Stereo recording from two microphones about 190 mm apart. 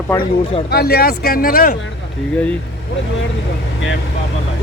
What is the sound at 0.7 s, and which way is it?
Speech, 55° left (ahead or behind).